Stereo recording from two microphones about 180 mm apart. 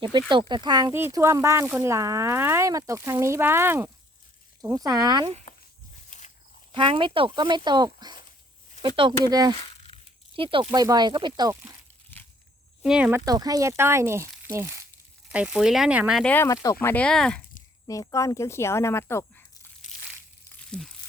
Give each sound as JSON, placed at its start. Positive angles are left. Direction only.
{"t": 0.3, "sound": "speech", "side_deg": -25}
{"t": 6.1, "sound": "walk", "side_deg": 40}
{"t": 6.7, "sound": "speech", "side_deg": -30}
{"t": 9.2, "sound": "speech", "side_deg": -20}
{"t": 9.6, "sound": "a sound", "side_deg": 35}
{"t": 10.3, "sound": "speech", "side_deg": -30}
{"t": 12.2, "sound": "a sound", "side_deg": 10}
{"t": 12.8, "sound": "speech", "side_deg": -5}
{"t": 16.2, "sound": "speech", "side_deg": 10}
{"t": 17.8, "sound": "speech", "side_deg": 20}
{"t": 20.7, "sound": "speech", "side_deg": 0}